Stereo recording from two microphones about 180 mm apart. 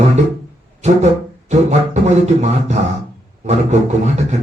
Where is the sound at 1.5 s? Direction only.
40° right (ahead or behind).